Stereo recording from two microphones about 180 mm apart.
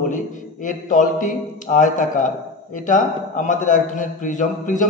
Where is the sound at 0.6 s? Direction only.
45° left (ahead or behind).